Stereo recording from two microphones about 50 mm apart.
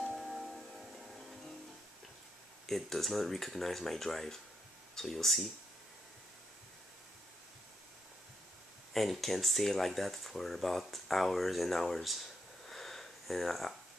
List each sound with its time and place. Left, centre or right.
0.2 s music: centre
2.6 s speech: centre
8.9 s speech: centre